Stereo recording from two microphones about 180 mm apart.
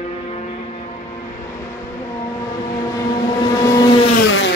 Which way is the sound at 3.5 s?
20° left (ahead or behind).